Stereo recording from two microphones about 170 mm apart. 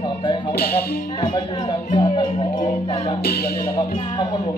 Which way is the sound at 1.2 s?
25° left (ahead or behind).